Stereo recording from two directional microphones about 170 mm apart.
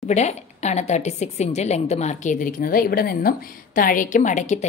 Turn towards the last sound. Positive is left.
turn(degrees=45)  # may be behind; listen again after turning